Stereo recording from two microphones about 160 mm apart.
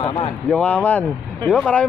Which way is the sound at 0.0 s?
35° left (ahead or behind).